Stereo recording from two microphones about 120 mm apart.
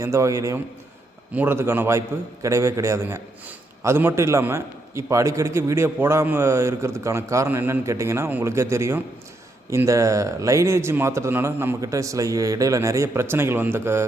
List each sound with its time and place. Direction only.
0.0 s a man's voice: 25° right (ahead or behind)